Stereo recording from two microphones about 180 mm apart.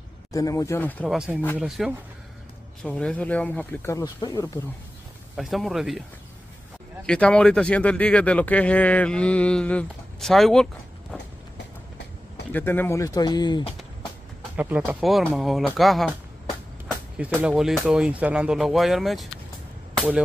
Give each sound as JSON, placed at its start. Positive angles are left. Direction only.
{"t": 0.3, "sound": "speech", "side_deg": 20}
{"t": 1.0, "sound": "speech", "side_deg": -5}
{"t": 5.3, "sound": "speech", "side_deg": 0}
{"t": 7.1, "sound": "speech", "side_deg": 5}
{"t": 12.5, "sound": "speech", "side_deg": 10}
{"t": 14.6, "sound": "speech", "side_deg": -5}